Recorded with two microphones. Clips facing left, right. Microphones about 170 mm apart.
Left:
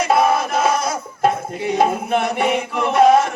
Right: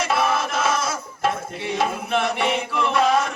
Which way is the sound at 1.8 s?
45° left (ahead or behind).